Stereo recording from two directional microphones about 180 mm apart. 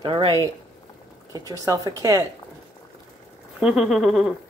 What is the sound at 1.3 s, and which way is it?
Speech, 20° right (ahead or behind).